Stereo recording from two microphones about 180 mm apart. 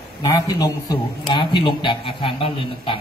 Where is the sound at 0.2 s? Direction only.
20° left (ahead or behind).